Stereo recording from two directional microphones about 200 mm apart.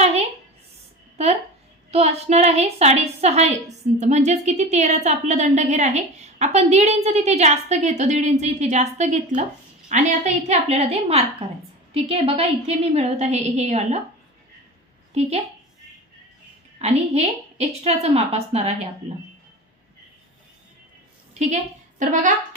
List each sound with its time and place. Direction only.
1.1 s a woman's voice: 30° right (ahead or behind)
15.1 s a woman's voice: 30° right (ahead or behind)
16.7 s a woman's voice: 35° right (ahead or behind)
21.4 s a woman's voice: 35° right (ahead or behind)